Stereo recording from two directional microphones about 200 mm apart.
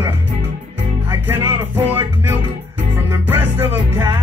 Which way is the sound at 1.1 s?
10° right (ahead or behind).